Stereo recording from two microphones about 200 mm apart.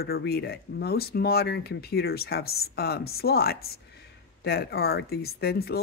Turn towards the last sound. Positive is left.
turn(degrees=50)  # may be behind; listen again after turning